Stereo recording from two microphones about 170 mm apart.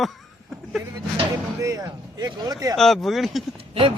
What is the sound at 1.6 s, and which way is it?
Speech, 20° right (ahead or behind).